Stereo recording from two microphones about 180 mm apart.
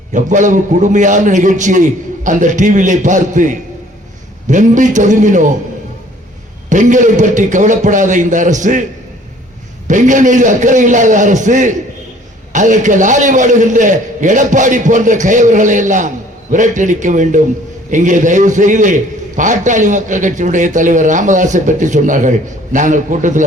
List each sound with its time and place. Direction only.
0.1 s a man's voice: 45° right (ahead or behind)
6.7 s a man's voice: 45° right (ahead or behind)
9.8 s a man's voice: 45° right (ahead or behind)